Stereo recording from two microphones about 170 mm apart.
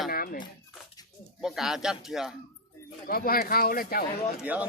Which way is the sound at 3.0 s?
60° left (ahead or behind).